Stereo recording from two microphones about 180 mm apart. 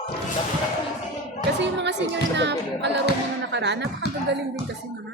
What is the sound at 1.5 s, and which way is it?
Speech, 75° right (ahead or behind).